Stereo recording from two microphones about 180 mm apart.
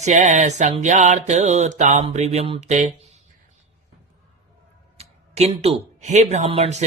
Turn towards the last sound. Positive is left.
turn(degrees=-35)  # may be behind; listen again after turning